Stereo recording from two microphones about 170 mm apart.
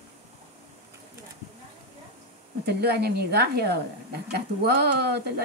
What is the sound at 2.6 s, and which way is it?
A woman's voice, 70° right (ahead or behind).